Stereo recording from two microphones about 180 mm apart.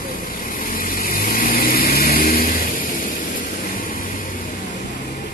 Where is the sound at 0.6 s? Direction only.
50° left (ahead or behind).